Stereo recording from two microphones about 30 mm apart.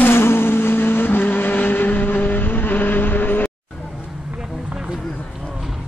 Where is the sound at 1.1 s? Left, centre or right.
Left.